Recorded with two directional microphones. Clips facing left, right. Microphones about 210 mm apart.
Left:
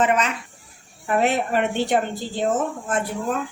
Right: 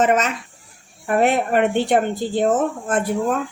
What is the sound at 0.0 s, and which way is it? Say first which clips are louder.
Speech: right 3 dB; 45° right (ahead or behind).